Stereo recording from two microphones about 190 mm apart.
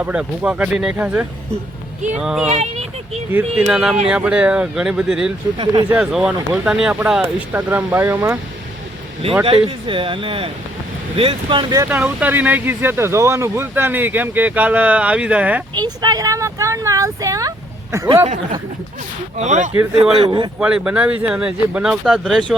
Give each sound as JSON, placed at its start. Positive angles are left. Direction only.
{"t": 0.0, "sound": "speech", "side_deg": -5}
{"t": 2.5, "sound": "speech", "side_deg": -35}
{"t": 3.3, "sound": "speech", "side_deg": -5}
{"t": 9.4, "sound": "speech", "side_deg": -30}
{"t": 15.7, "sound": "speech", "side_deg": -20}
{"t": 19.4, "sound": "speech", "side_deg": -40}
{"t": 20.6, "sound": "speech", "side_deg": -5}